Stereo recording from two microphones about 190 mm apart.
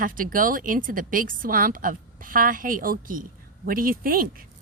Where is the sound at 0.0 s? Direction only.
45° right (ahead or behind).